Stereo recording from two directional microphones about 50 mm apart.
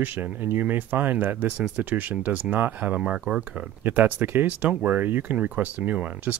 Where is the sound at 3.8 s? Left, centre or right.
Right.